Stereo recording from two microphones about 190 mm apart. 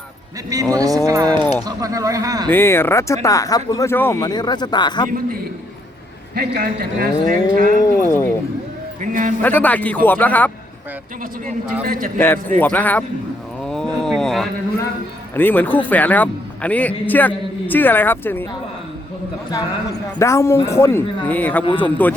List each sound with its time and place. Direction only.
0.5 s speech: 20° right (ahead or behind)
2.5 s a man's voice: 10° left (ahead or behind)
6.3 s speech: 55° right (ahead or behind)
7.9 s a man's voice: 15° left (ahead or behind)
9.0 s a man's voice: 40° right (ahead or behind)
9.4 s a man's voice: 10° left (ahead or behind)
11.9 s speech: 45° right (ahead or behind)
12.5 s a man's voice: 10° left (ahead or behind)
13.7 s a sound: 5° left (ahead or behind)
15.4 s a man's voice: 10° left (ahead or behind)
20.1 s a man's voice: 15° left (ahead or behind)